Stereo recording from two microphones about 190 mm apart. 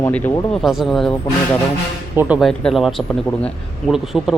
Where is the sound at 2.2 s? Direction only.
5° right (ahead or behind).